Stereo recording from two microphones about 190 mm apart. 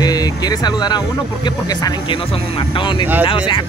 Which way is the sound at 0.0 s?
20° left (ahead or behind).